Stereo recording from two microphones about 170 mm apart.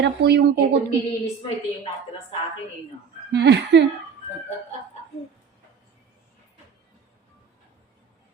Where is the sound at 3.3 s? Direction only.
90° right.